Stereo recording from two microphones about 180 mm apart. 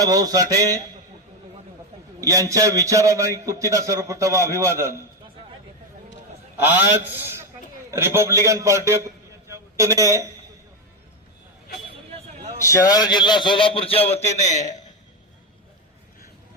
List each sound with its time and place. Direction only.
0.0 s speech: 20° right (ahead or behind)
2.2 s a man's voice: 20° right (ahead or behind)
6.6 s a man's voice: 10° right (ahead or behind)
12.7 s a man's voice: 20° left (ahead or behind); by 14.7 s 40° left (ahead or behind)